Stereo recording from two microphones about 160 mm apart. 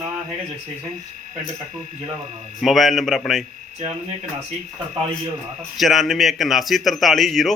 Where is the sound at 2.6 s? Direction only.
Centre (ahead or behind).